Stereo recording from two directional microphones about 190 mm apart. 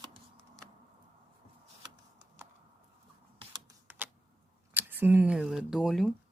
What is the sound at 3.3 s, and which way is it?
Typing, 20° right (ahead or behind).